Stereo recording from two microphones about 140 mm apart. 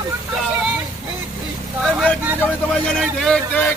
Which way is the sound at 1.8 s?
5° left (ahead or behind).